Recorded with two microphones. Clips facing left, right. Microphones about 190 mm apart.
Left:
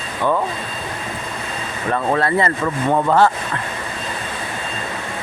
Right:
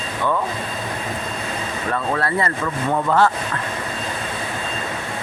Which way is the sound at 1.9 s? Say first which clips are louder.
Left 4 dB; 25° left (ahead or behind).